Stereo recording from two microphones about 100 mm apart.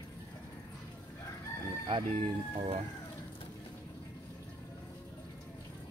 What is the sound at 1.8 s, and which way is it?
Speech, 65° right (ahead or behind).